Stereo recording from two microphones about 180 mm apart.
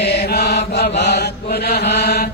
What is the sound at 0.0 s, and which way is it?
Mantra, 70° left (ahead or behind).